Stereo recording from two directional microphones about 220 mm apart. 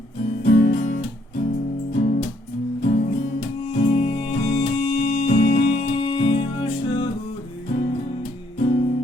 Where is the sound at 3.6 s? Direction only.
25° left (ahead or behind).